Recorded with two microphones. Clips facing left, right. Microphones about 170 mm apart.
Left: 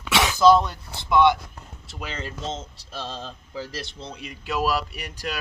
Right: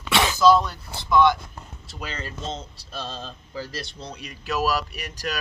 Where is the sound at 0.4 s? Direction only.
20° left (ahead or behind).